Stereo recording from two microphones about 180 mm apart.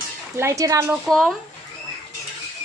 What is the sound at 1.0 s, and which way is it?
Speech, centre (ahead or behind).